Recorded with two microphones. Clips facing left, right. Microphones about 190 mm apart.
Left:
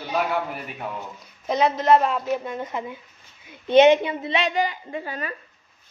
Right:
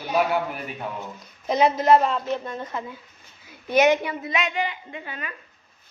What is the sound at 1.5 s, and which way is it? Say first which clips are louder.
A woman's voice: right 1 dB; 5° right (ahead or behind).